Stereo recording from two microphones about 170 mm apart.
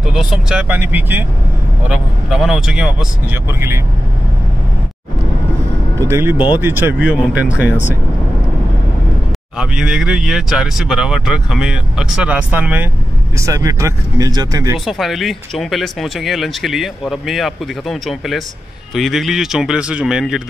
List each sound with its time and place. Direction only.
0.0 s speech: 5° right (ahead or behind)
5.9 s speech: 15° right (ahead or behind)
9.6 s speech: 5° right (ahead or behind); by 14.8 s 20° right (ahead or behind)
14.9 s speech: centre (ahead or behind)